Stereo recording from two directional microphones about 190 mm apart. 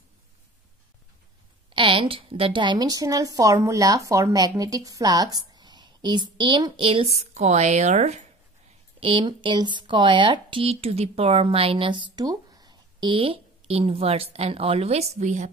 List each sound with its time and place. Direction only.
1.7 s a woman's voice: 25° right (ahead or behind)
9.0 s a woman's voice: 25° right (ahead or behind)